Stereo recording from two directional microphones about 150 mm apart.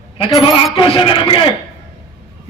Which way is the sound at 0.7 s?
35° left (ahead or behind).